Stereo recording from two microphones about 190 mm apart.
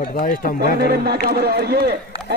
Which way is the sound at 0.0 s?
50° left (ahead or behind).